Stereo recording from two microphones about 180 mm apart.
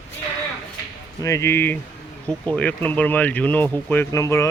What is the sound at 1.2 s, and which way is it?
Speech, 15° left (ahead or behind).